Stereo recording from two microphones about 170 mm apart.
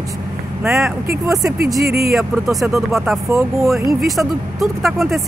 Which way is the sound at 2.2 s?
Centre (ahead or behind).